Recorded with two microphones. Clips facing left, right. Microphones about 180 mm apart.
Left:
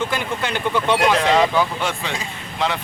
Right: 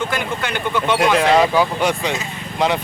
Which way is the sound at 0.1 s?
30° left (ahead or behind).